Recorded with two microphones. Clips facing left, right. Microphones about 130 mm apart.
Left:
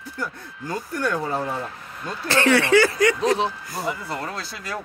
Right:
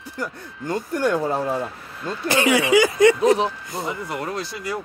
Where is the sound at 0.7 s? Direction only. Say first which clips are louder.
Right 4 dB; 25° right (ahead or behind).